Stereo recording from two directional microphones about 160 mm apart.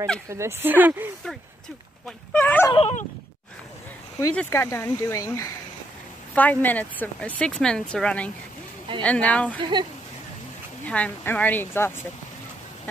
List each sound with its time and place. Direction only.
0.3 s speech: 15° right (ahead or behind)
2.0 s dog: 10° left (ahead or behind)
2.7 s speech: 35° left (ahead or behind)
4.4 s speech: 15° left (ahead or behind)
9.6 s speech: 30° right (ahead or behind)
10.9 s speech: 10° left (ahead or behind)